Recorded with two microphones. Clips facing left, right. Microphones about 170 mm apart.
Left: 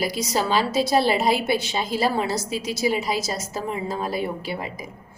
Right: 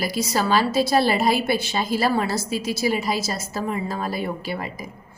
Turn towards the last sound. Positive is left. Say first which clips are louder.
# even
turn(degrees=15)  # may be behind; listen again after turning